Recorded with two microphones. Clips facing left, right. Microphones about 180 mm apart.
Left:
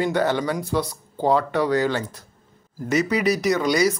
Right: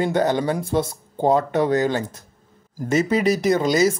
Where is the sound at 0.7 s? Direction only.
30° right (ahead or behind).